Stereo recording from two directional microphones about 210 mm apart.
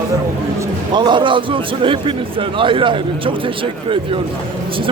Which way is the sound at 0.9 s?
20° right (ahead or behind).